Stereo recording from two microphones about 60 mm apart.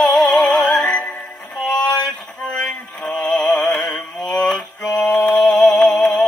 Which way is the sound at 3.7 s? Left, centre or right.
Left.